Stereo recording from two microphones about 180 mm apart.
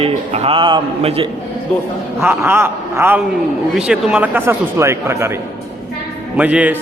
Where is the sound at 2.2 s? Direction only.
10° right (ahead or behind).